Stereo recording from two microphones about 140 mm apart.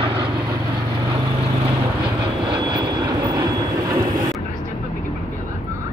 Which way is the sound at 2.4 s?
35° right (ahead or behind).